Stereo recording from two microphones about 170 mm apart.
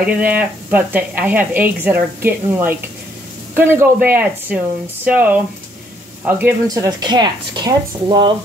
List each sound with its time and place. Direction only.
0.0 s speech: 10° right (ahead or behind)
6.7 s speech: 20° right (ahead or behind)